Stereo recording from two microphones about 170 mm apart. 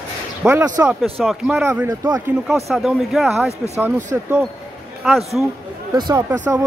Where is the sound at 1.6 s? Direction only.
15° right (ahead or behind).